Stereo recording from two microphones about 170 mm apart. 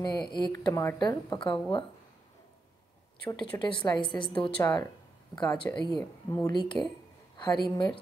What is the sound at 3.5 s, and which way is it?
Speech, 20° left (ahead or behind).